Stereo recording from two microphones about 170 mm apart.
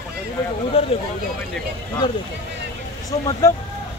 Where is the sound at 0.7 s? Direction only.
35° left (ahead or behind).